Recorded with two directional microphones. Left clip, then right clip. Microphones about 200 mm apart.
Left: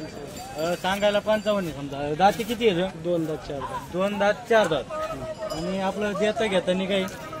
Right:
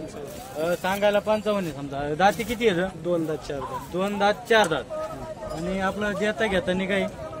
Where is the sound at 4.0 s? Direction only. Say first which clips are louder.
Even; 55° right (ahead or behind).